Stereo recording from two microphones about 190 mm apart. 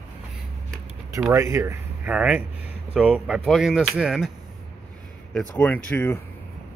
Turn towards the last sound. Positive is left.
turn(degrees=10)  # may be behind; listen again after turning